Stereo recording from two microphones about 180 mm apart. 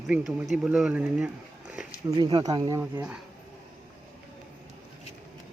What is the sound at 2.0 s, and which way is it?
Speech, 25° right (ahead or behind).